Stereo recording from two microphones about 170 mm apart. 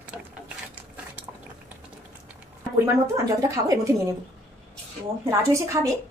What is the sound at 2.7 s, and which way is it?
A woman's voice, 15° right (ahead or behind).